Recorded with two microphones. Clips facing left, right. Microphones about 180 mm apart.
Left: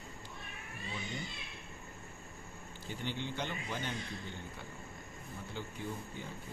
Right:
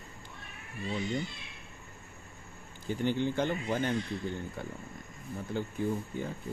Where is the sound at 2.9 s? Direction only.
45° right (ahead or behind).